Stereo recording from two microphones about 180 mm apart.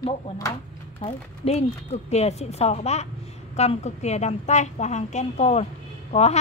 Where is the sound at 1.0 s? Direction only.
35° left (ahead or behind).